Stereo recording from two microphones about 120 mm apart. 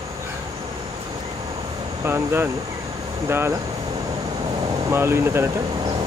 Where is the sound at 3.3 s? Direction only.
20° right (ahead or behind).